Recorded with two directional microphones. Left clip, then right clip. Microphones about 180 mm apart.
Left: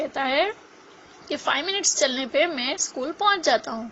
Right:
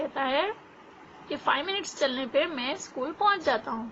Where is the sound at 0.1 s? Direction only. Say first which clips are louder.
Left 4 dB; 35° left (ahead or behind).